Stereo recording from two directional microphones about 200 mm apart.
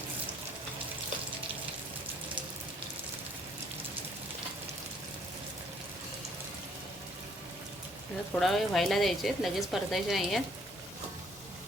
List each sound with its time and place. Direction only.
8.4 s speech: centre (ahead or behind)